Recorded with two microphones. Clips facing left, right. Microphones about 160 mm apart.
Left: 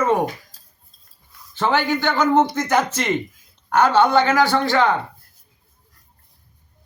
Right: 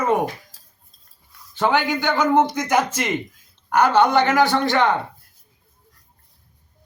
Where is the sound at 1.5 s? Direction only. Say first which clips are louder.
Even; 15° right (ahead or behind).